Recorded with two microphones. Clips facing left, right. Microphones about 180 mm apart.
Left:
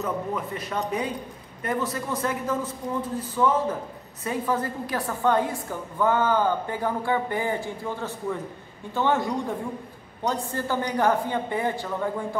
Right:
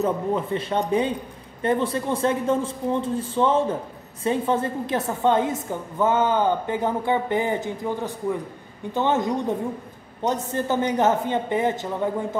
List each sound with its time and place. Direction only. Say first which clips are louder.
0.0 s a woman's voice: right 5 dB; 30° right (ahead or behind)